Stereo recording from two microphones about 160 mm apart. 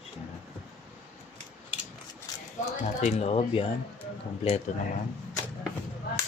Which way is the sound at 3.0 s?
40° left (ahead or behind).